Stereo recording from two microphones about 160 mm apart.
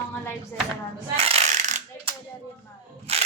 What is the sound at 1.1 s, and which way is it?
Coin, 40° right (ahead or behind).